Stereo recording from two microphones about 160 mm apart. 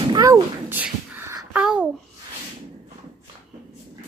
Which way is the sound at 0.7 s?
10° right (ahead or behind).